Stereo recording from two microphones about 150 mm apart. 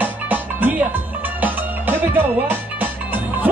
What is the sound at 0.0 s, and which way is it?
Music, 10° right (ahead or behind).